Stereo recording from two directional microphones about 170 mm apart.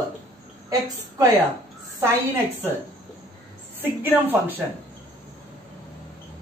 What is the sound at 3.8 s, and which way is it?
Speech, 10° right (ahead or behind).